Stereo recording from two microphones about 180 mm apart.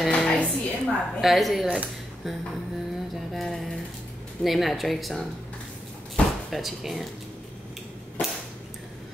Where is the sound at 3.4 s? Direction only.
Centre (ahead or behind).